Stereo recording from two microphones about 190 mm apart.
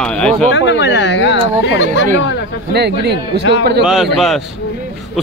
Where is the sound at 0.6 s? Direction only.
65° left (ahead or behind).